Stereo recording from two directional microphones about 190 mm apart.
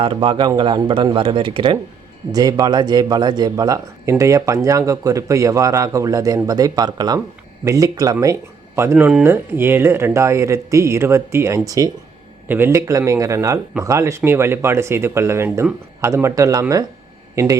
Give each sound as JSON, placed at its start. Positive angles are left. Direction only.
{"t": 0.0, "sound": "a man's voice", "side_deg": -25}